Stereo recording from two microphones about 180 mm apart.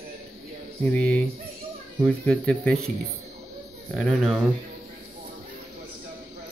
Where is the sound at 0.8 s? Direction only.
5° left (ahead or behind).